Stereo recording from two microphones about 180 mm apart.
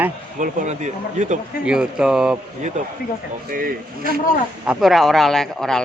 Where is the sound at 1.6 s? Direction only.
5° right (ahead or behind).